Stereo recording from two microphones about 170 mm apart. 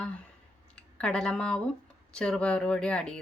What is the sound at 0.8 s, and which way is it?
Speech, 5° left (ahead or behind).